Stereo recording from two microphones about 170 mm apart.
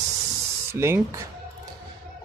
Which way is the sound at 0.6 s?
15° right (ahead or behind).